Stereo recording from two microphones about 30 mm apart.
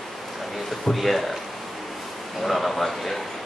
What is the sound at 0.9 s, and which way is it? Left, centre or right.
Speech, centre.